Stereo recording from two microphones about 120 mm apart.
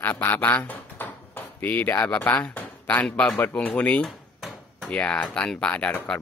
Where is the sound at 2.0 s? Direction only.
15° left (ahead or behind).